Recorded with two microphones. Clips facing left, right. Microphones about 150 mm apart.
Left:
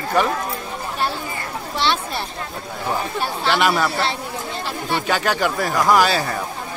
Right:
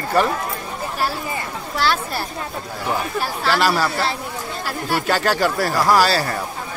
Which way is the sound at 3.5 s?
Centre (ahead or behind).